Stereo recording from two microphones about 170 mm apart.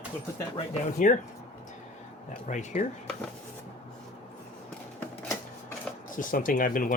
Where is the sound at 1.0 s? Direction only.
50° left (ahead or behind).